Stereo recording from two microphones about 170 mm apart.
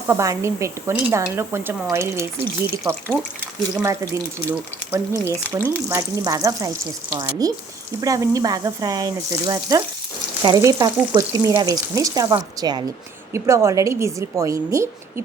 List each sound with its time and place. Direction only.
0.1 s speech: 15° right (ahead or behind)
3.8 s speech: 15° right (ahead or behind)
5.9 s frying: 20° right (ahead or behind)
13.3 s speech: 15° right (ahead or behind)